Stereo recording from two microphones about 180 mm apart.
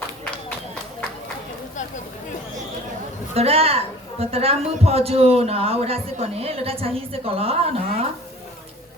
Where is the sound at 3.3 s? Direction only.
35° right (ahead or behind).